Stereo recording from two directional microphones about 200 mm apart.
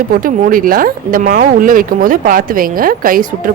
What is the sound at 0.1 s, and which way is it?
Speech, 45° right (ahead or behind).